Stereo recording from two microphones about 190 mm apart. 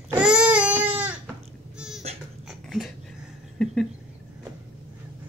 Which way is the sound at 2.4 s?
Centre (ahead or behind).